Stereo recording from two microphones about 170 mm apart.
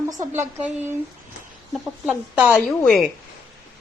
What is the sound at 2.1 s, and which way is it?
Speech, 5° right (ahead or behind).